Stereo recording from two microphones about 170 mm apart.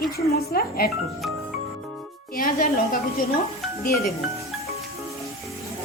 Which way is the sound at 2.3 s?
55° left (ahead or behind).